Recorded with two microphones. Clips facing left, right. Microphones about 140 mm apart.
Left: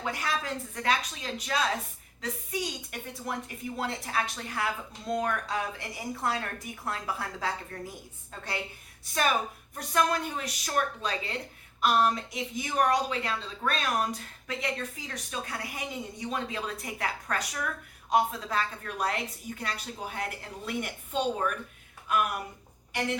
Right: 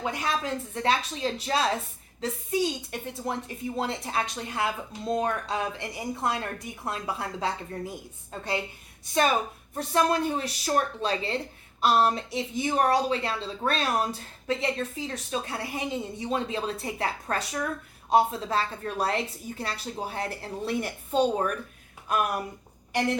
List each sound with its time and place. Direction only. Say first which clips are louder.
0.0 s speech: right 3 dB; 20° right (ahead or behind)
9.7 s a woman's voice: right 3 dB; 30° right (ahead or behind)